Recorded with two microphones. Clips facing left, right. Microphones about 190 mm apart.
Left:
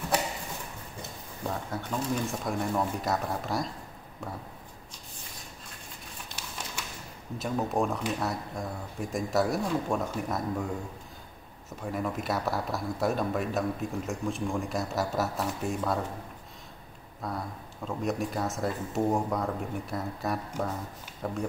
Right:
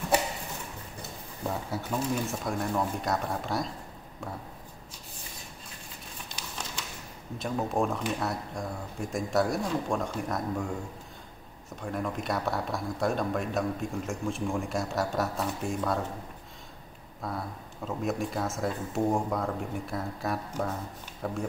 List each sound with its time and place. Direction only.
1.5 s speech: 5° right (ahead or behind)
7.3 s speech: centre (ahead or behind)
11.8 s speech: 5° left (ahead or behind)
17.2 s speech: centre (ahead or behind)